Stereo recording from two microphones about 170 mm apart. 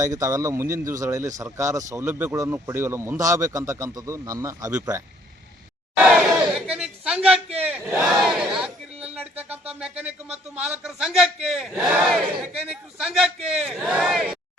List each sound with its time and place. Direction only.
0.0 s speech: 20° right (ahead or behind)
6.1 s battle cry: 5° right (ahead or behind)
7.7 s crowd: 5° right (ahead or behind)
9.1 s a sound: 10° right (ahead or behind)
9.8 s a man's voice: 5° right (ahead or behind)